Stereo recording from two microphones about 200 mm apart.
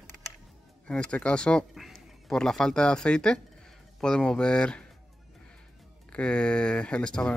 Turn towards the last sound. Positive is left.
turn(degrees=5)  # may be behind; listen again after turning